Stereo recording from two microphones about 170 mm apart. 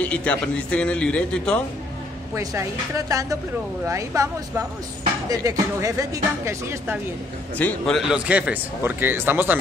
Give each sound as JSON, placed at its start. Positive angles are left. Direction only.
{"t": 0.0, "sound": "a man's voice", "side_deg": 10}
{"t": 2.3, "sound": "a man's voice", "side_deg": -15}
{"t": 7.5, "sound": "a man's voice", "side_deg": 5}